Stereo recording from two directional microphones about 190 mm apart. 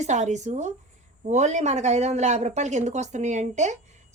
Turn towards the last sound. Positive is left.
turn(degrees=-35)  # may be behind; listen again after turning